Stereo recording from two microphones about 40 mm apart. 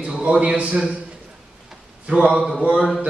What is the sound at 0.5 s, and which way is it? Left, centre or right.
Speech, right.